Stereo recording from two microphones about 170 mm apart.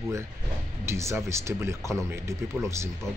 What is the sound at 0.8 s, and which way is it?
Speech, 15° right (ahead or behind).